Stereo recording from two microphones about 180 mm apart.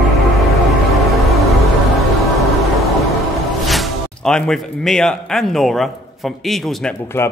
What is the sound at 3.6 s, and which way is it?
Speech, centre (ahead or behind).